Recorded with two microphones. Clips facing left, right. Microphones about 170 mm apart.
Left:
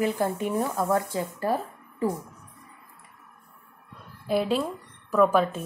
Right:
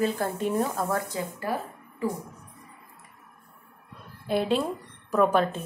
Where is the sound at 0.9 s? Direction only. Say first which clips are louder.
Left 3 dB; 25° left (ahead or behind).